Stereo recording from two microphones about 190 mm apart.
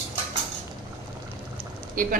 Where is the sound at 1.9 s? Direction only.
45° right (ahead or behind).